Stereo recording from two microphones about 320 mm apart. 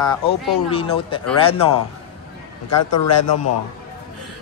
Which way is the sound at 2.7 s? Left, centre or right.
Left.